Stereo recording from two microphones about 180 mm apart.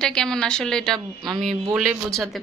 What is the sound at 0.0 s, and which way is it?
Speech, 5° left (ahead or behind).